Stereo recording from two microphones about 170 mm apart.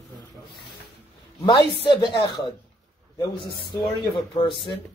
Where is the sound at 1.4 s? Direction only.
25° left (ahead or behind).